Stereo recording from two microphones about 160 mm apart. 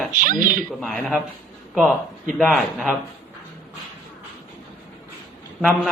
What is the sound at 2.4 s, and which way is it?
Speech, centre (ahead or behind).